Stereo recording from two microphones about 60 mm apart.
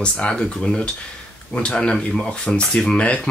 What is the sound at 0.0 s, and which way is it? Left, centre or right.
Speech, centre.